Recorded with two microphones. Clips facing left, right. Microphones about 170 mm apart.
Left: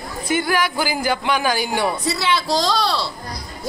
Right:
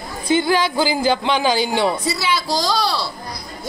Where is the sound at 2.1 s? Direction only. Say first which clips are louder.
Left 1 dB; 5° right (ahead or behind).